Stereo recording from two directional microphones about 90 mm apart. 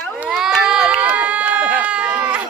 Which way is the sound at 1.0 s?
15° right (ahead or behind).